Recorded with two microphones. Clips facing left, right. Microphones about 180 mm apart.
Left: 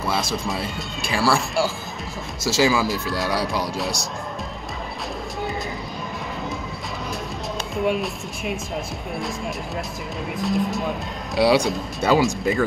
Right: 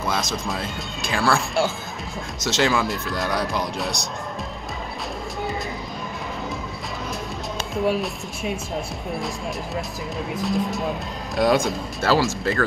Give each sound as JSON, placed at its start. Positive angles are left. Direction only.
{"t": 0.0, "sound": "music", "side_deg": 0}
{"t": 0.5, "sound": "speech", "side_deg": 0}
{"t": 7.7, "sound": "speech", "side_deg": 0}
{"t": 10.3, "sound": "speech", "side_deg": 0}
{"t": 12.3, "sound": "speech", "side_deg": 15}